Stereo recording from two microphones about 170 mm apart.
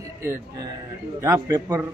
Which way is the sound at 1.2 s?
20° right (ahead or behind).